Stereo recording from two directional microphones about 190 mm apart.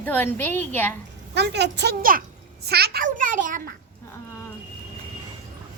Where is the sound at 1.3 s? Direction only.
65° right (ahead or behind); by 3.7 s 45° right (ahead or behind).